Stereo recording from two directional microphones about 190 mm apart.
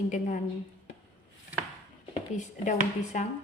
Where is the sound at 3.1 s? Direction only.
40° left (ahead or behind).